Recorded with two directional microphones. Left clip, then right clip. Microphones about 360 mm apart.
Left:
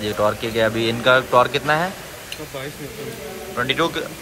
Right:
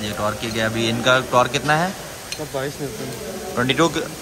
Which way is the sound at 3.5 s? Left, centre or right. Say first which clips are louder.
Right 2 dB; centre.